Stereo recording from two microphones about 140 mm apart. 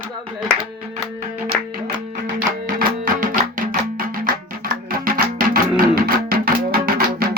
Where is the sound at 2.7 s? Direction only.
85° right.